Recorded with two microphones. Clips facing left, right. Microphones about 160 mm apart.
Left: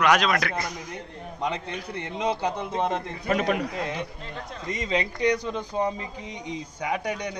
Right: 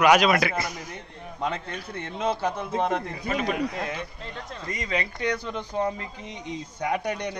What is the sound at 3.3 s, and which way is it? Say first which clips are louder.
Speech: left 3 dB; 45° left (ahead or behind).